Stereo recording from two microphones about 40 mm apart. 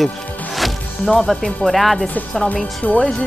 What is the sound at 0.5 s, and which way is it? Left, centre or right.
Music, centre.